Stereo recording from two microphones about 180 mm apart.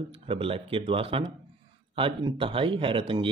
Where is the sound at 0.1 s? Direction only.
30° right (ahead or behind).